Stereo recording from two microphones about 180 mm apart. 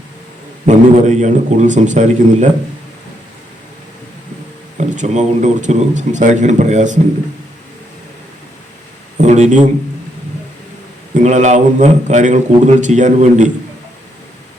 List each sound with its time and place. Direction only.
0.6 s speech: 40° right (ahead or behind)
4.8 s speech: 40° right (ahead or behind)
9.1 s a sound: 40° right (ahead or behind)
11.1 s a man's voice: 40° right (ahead or behind)